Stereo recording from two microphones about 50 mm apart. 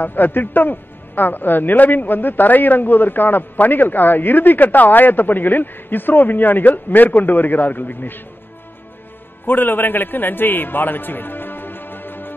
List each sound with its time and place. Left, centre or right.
0.0 s a man's voice: left
9.5 s a man's voice: left